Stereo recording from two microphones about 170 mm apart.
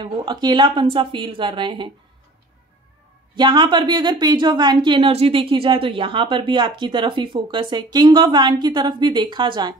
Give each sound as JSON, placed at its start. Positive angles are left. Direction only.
{"t": 0.0, "sound": "a woman's voice", "side_deg": -25}
{"t": 3.3, "sound": "a woman's voice", "side_deg": -25}